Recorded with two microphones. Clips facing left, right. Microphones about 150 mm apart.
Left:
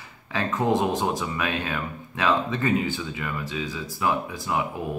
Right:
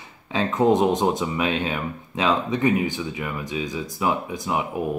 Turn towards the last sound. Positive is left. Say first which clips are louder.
# right 2 dB
turn(degrees=-20)  # may be behind; listen again after turning